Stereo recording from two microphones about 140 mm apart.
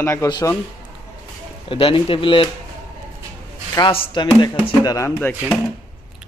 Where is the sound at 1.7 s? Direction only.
40° left (ahead or behind).